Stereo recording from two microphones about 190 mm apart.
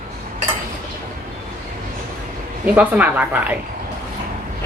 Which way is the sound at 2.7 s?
10° right (ahead or behind).